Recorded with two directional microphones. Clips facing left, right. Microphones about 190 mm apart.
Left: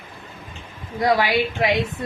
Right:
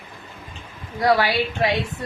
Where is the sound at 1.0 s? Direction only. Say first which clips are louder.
Even; 20° left (ahead or behind).